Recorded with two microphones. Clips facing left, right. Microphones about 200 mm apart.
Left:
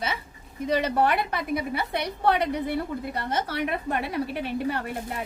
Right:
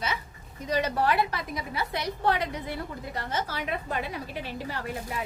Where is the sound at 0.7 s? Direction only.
60° left (ahead or behind).